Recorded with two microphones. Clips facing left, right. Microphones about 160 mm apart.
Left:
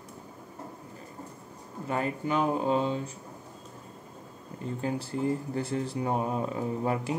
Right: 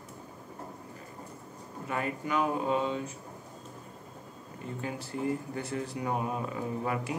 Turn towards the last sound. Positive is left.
turn(degrees=30)  # may be behind; listen again after turning